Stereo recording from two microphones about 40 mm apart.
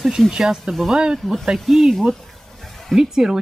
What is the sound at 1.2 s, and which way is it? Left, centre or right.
Speech, centre.